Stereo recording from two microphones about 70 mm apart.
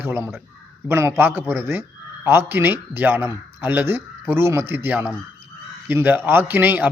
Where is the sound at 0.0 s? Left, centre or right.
Right.